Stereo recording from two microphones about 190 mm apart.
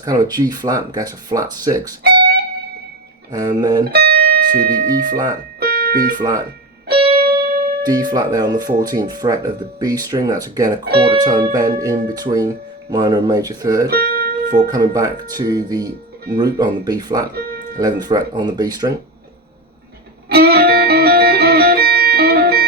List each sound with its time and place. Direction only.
0.0 s speech: 20° right (ahead or behind)
2.0 s music: 60° right (ahead or behind)
3.3 s speech: 20° right (ahead or behind)
3.9 s music: 55° right (ahead or behind)
6.1 s speech: 20° right (ahead or behind)
7.8 s speech: 20° right (ahead or behind)
13.9 s music: 55° right (ahead or behind)
14.7 s speech: 20° right (ahead or behind)
20.3 s music: 55° right (ahead or behind)